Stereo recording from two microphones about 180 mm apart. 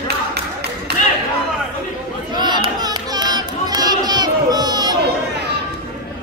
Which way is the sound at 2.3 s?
25° right (ahead or behind).